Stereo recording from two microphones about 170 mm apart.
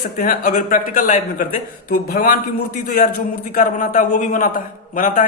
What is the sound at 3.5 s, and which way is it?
A man's voice, 50° left (ahead or behind).